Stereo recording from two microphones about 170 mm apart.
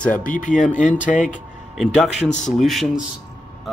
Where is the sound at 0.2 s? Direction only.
50° left (ahead or behind).